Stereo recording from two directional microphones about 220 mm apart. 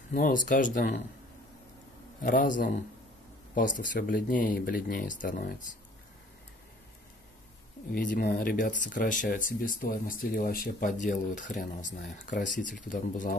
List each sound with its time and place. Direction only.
0.1 s speech: 40° left (ahead or behind)
2.2 s speech: 40° left (ahead or behind)
7.9 s speech: 40° left (ahead or behind)